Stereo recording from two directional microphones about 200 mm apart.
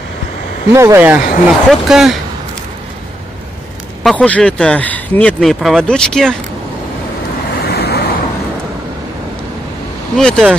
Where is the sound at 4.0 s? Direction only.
Centre (ahead or behind).